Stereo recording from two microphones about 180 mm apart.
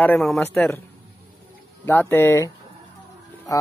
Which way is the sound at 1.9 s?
10° left (ahead or behind).